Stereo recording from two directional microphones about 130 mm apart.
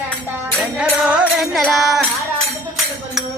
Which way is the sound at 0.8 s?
10° right (ahead or behind).